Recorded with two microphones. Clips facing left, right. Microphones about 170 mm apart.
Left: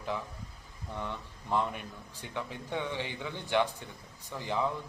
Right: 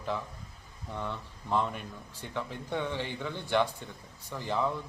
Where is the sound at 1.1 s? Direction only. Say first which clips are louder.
Right 1 dB; 15° left (ahead or behind).